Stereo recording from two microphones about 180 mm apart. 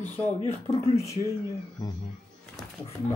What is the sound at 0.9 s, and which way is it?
Speech, 15° left (ahead or behind).